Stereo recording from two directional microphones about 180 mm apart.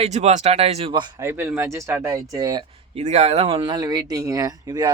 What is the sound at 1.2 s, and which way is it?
Speech, 15° right (ahead or behind).